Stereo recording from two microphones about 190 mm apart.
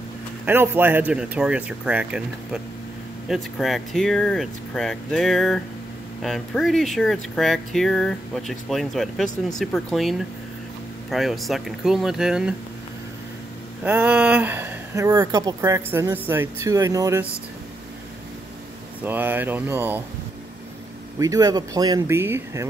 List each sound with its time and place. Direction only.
0.5 s speech: 10° right (ahead or behind)
13.8 s speech: 10° right (ahead or behind)
19.0 s speech: 10° right (ahead or behind)
21.2 s speech: 20° right (ahead or behind)